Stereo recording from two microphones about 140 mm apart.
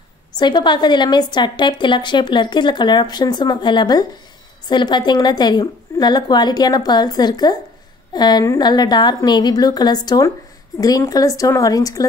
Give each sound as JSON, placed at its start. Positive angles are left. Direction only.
{"t": 0.4, "sound": "a woman's voice", "side_deg": 35}